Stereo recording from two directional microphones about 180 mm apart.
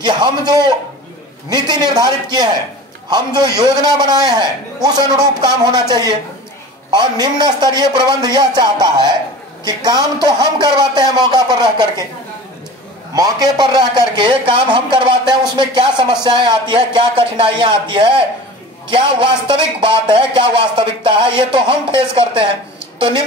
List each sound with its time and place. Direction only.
0.0 s a man's voice: 25° right (ahead or behind)
6.9 s a man's voice: 25° right (ahead or behind)
13.1 s a man's voice: 20° right (ahead or behind)